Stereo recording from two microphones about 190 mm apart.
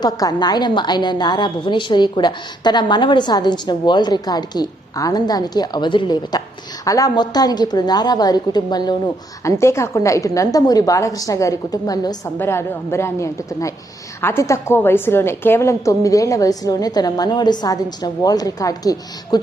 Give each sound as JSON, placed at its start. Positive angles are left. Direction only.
{"t": 0.0, "sound": "a woman's voice", "side_deg": 20}